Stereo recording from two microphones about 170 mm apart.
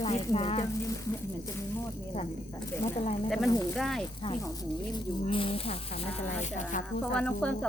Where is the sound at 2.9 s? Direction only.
40° left (ahead or behind).